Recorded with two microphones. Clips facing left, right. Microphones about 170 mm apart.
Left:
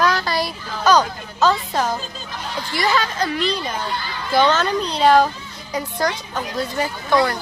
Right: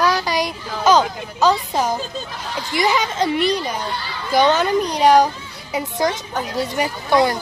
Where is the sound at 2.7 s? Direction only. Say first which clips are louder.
Right 2 dB; 20° right (ahead or behind).